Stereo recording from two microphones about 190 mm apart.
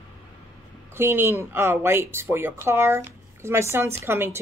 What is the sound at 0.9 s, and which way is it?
Speech, 10° right (ahead or behind).